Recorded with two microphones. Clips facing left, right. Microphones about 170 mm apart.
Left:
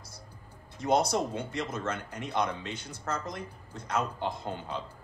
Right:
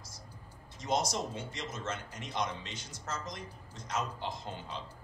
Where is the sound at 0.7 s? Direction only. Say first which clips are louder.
Left 6 dB; 60° left (ahead or behind).